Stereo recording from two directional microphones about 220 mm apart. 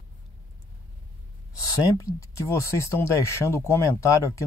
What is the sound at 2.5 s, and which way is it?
Speech, 15° left (ahead or behind).